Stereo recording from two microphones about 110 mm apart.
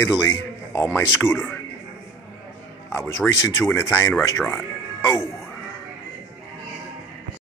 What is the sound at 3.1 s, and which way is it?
Speech, 30° left (ahead or behind).